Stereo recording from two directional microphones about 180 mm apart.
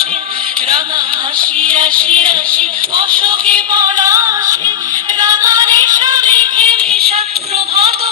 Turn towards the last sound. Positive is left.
turn(degrees=-35)  # may be behind; listen again after turning